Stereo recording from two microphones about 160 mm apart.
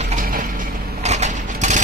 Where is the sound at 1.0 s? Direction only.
45° right (ahead or behind).